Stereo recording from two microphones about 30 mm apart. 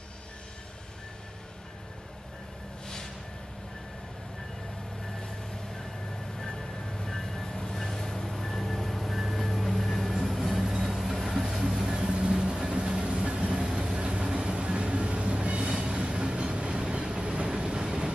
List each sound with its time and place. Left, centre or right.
6.4 s music: centre
10.7 s vehicle: centre
12.1 s vehicle: right
12.9 s train: right
17.5 s vehicle: right